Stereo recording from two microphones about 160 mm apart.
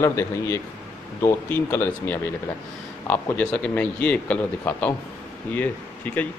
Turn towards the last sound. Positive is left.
turn(degrees=10)  # may be behind; listen again after turning